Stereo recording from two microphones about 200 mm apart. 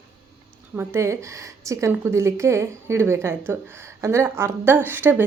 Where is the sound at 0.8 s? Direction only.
15° right (ahead or behind).